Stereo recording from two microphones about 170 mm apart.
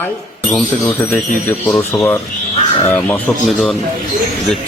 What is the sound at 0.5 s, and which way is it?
Speech, 5° left (ahead or behind).